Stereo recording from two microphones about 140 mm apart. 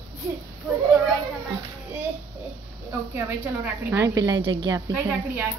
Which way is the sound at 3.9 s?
25° right (ahead or behind).